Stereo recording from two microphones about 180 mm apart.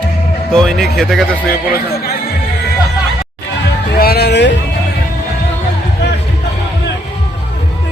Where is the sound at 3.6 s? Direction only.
60° left (ahead or behind).